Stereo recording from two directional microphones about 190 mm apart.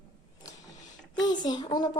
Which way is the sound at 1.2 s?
20° left (ahead or behind).